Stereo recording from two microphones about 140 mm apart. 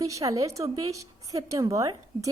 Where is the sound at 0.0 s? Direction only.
25° right (ahead or behind).